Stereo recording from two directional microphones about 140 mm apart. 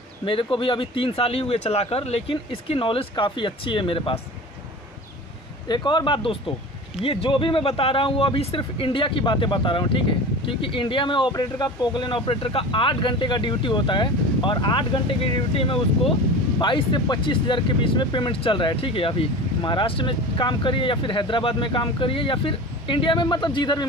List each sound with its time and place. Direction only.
0.2 s speech: 40° left (ahead or behind)
5.7 s speech: 30° left (ahead or behind)